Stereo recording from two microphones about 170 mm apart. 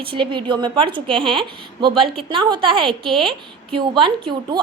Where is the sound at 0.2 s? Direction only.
30° right (ahead or behind).